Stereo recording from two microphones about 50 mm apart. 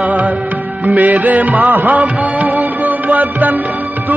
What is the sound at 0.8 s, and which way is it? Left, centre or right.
Music of bollywood, right.